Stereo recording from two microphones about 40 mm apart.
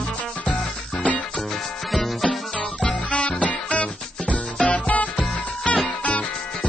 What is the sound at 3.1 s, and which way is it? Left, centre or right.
Music, left.